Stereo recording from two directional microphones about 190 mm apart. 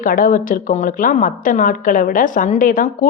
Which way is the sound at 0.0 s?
45° left (ahead or behind).